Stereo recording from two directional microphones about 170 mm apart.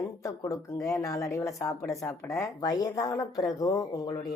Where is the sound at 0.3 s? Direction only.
20° left (ahead or behind).